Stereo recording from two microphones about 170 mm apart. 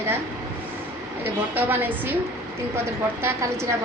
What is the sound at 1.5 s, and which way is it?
Speech, 10° right (ahead or behind).